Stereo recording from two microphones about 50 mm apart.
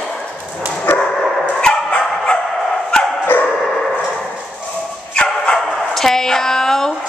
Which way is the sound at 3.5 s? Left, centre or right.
Centre.